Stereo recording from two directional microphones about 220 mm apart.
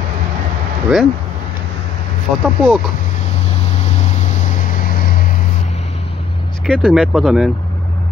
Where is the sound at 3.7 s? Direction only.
30° left (ahead or behind).